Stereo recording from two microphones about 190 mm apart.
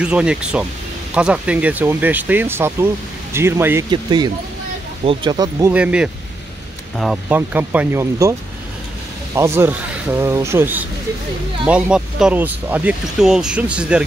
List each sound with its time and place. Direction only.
0.0 s speech: 5° right (ahead or behind)
3.9 s speech: 25° right (ahead or behind)
5.7 s speech: 5° right (ahead or behind)
7.2 s speech: 10° right (ahead or behind)